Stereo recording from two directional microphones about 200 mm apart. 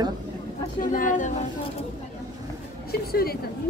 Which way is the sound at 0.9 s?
40° left (ahead or behind).